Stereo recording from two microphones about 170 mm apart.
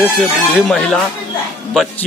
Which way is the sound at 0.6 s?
5° left (ahead or behind).